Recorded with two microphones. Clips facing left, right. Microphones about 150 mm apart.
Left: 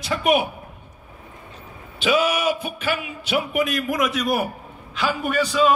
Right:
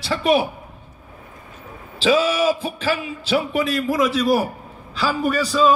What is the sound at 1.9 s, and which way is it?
Speech, 30° right (ahead or behind).